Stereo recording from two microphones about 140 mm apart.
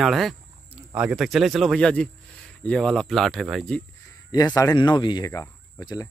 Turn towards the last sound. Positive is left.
turn(degrees=25)  # may be behind; listen again after turning